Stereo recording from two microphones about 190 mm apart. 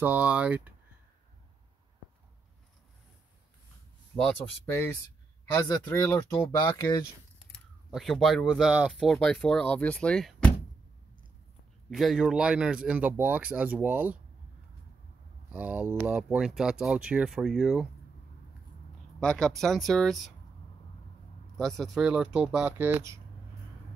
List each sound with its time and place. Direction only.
0.0 s speech: 5° right (ahead or behind)
4.2 s speech: 5° left (ahead or behind)
7.9 s speech: centre (ahead or behind)
11.9 s speech: centre (ahead or behind)
15.5 s speech: 10° right (ahead or behind)
19.1 s speech: 5° left (ahead or behind)
21.5 s speech: centre (ahead or behind)